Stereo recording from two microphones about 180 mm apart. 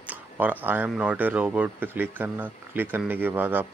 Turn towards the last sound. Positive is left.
turn(degrees=-10)  # may be behind; listen again after turning